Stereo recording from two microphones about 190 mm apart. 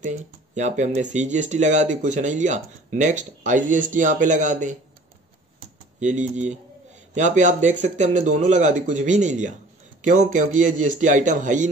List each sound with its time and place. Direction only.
0.0 s speech: 40° right (ahead or behind)
5.9 s speech: 40° right (ahead or behind)